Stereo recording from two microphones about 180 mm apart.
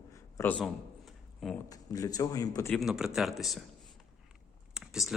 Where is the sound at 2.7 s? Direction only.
Centre (ahead or behind).